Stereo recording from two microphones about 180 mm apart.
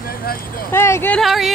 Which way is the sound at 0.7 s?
15° left (ahead or behind).